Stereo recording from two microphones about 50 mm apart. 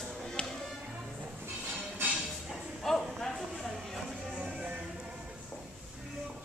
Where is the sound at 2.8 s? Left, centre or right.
Centre.